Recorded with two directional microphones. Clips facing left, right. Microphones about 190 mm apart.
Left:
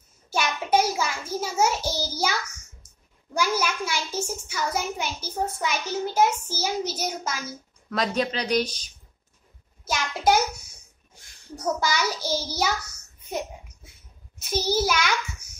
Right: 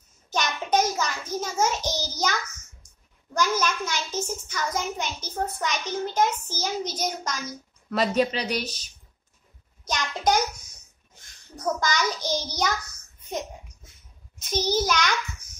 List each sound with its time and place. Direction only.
0.3 s a sound: 10° left (ahead or behind)
3.3 s a child's voice: 10° left (ahead or behind)
7.9 s speech: 5° right (ahead or behind)
9.8 s a child's voice: 5° left (ahead or behind)
14.4 s a child's voice: 10° left (ahead or behind)